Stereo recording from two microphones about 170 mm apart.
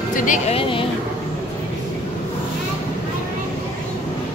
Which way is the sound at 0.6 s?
30° left (ahead or behind).